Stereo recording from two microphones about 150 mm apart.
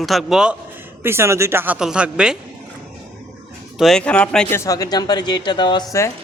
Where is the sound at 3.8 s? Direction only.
5° left (ahead or behind).